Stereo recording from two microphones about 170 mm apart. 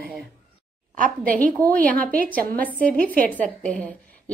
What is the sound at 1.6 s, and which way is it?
Speech, 10° left (ahead or behind).